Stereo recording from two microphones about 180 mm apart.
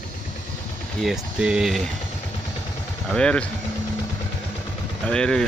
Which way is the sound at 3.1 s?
5° left (ahead or behind).